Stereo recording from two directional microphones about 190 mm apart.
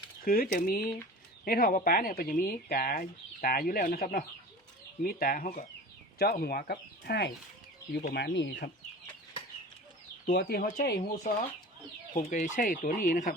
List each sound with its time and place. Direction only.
0.3 s speech: 50° left (ahead or behind); by 8.7 s 65° left (ahead or behind)
10.2 s speech: 55° left (ahead or behind)
12.1 s speech: 45° left (ahead or behind)